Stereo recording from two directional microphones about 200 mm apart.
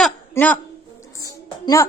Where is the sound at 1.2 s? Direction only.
15° left (ahead or behind).